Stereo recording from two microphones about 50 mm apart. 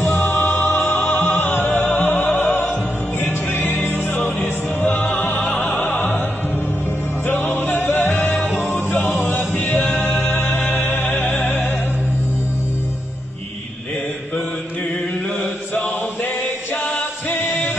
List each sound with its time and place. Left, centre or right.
0.6 s music: left
1.1 s music: left
1.4 s music: left
2.4 s music: left
3.9 s music: left
5.5 s opera: left
7.2 s music: left
8.1 s music: left
8.5 s music: left
10.0 s music: left
10.5 s music: left